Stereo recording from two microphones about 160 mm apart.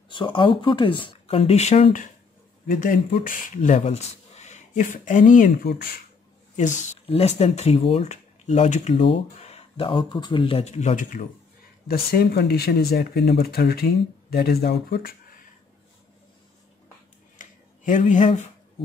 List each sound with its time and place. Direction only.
0.1 s speech: 30° left (ahead or behind); by 5.7 s 55° left (ahead or behind)
5.7 s speech: 70° left (ahead or behind)
6.5 s speech: 45° left (ahead or behind)
8.9 s speech: 35° left (ahead or behind); by 11.2 s 50° left (ahead or behind)
11.9 s speech: 80° left
17.4 s a sound: 55° left (ahead or behind)